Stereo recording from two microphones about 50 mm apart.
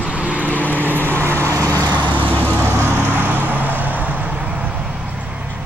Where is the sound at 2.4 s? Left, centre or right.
Right.